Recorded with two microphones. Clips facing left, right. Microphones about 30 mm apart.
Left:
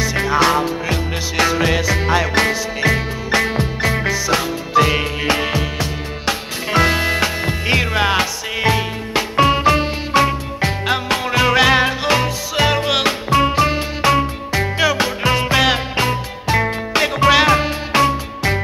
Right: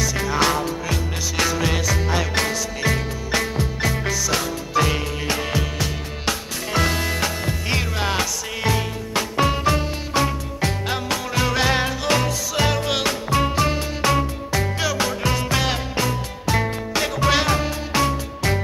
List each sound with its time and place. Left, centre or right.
0.0 s music: left